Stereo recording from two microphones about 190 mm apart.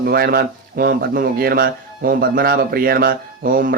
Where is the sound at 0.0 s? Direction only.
55° right (ahead or behind).